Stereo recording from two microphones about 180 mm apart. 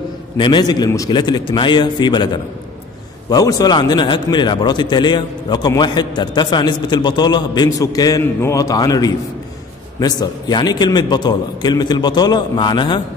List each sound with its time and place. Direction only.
0.4 s a man's voice: 25° left (ahead or behind)